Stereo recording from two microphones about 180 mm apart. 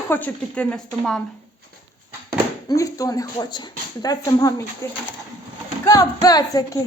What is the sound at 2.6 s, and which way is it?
Speech, 20° left (ahead or behind).